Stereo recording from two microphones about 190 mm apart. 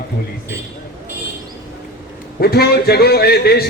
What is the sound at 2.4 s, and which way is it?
Speech, 55° left (ahead or behind).